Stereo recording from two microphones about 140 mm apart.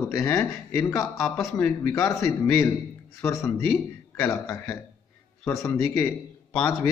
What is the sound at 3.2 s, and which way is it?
Speech, 20° left (ahead or behind).